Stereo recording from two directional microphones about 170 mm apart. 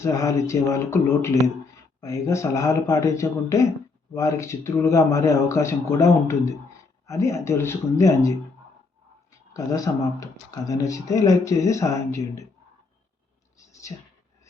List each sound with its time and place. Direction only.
0.0 s speech: 20° left (ahead or behind)
9.5 s speech: 20° left (ahead or behind)